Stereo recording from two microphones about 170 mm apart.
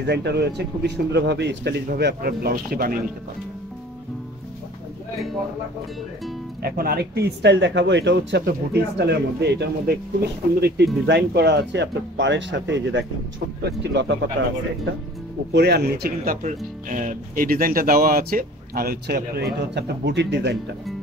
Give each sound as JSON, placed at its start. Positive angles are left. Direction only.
{"t": 0.0, "sound": "speech", "side_deg": -80}
{"t": 2.0, "sound": "speech", "side_deg": -70}
{"t": 6.6, "sound": "speech", "side_deg": -65}
{"t": 11.1, "sound": "speech", "side_deg": -85}
{"t": 15.5, "sound": "speech", "side_deg": -75}
{"t": 16.4, "sound": "speech", "side_deg": -50}